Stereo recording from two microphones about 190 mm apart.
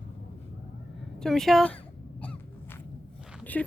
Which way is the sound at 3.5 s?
5° left (ahead or behind).